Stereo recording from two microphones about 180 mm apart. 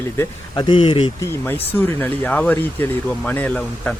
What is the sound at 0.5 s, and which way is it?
Speech, 25° left (ahead or behind).